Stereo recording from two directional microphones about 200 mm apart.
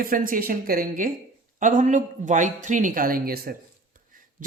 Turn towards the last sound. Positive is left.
turn(degrees=-50)  # may be behind; listen again after turning